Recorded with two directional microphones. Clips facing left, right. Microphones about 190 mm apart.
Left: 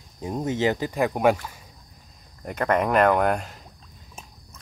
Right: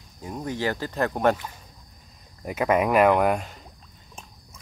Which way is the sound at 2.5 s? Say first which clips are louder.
Right 1 dB; 5° right (ahead or behind).